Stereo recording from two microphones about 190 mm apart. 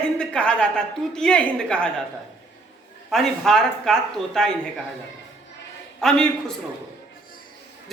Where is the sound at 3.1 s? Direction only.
Centre (ahead or behind).